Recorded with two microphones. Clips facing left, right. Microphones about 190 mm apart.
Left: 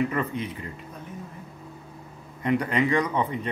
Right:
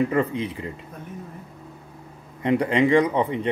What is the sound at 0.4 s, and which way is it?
Speech, 25° right (ahead or behind).